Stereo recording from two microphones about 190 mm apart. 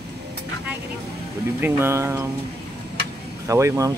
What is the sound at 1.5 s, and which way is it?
Speech, 10° right (ahead or behind).